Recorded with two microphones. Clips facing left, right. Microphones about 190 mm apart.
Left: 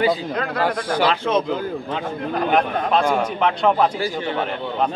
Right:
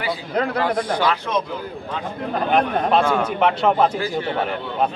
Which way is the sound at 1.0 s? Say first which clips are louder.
Left 5 dB; 25° left (ahead or behind).